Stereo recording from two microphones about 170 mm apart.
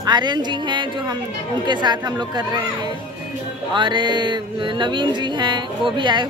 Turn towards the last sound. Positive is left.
turn(degrees=-25)  # may be behind; listen again after turning